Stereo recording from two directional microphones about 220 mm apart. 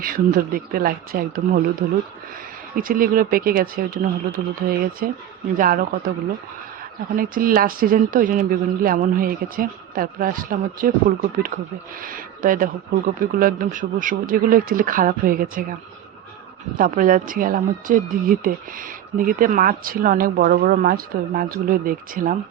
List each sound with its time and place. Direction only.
0.0 s speech: 40° right (ahead or behind)
2.7 s speech: 40° right (ahead or behind)
7.2 s speech: 40° right (ahead or behind)
16.7 s speech: 40° right (ahead or behind)